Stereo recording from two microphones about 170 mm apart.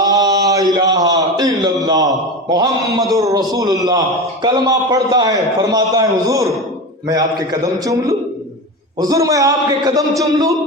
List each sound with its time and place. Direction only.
0.0 s a sound: 20° right (ahead or behind)
3.1 s a man's voice: 20° right (ahead or behind)
9.0 s a man's voice: 20° right (ahead or behind)